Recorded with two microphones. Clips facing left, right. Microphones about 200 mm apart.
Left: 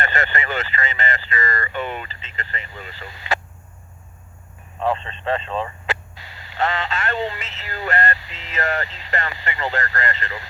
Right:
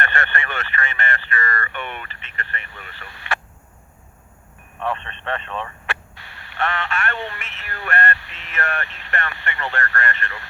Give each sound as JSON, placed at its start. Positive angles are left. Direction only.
{"t": 0.0, "sound": "speech", "side_deg": 20}
{"t": 4.8, "sound": "speech", "side_deg": 20}
{"t": 6.6, "sound": "a sound", "side_deg": 20}